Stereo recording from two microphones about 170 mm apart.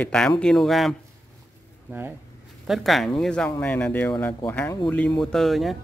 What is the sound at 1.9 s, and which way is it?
Speech, 10° right (ahead or behind).